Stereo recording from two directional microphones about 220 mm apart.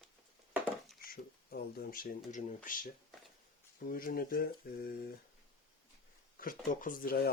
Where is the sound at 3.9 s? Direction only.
40° left (ahead or behind).